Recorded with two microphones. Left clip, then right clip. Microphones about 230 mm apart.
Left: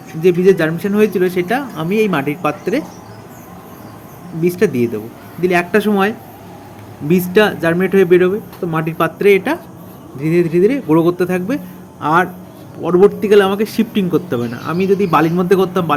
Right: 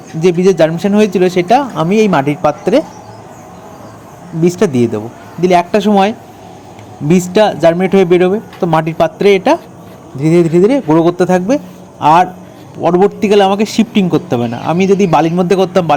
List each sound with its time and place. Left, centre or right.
0.2 s speech: right
4.4 s a man's voice: centre